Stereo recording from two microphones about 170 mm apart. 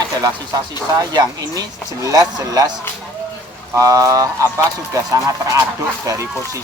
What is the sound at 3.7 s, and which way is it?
Speech, 20° right (ahead or behind).